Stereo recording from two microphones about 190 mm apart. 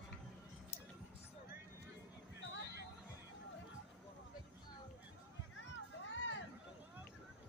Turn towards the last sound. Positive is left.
turn(degrees=75)  # may be behind; listen again after turning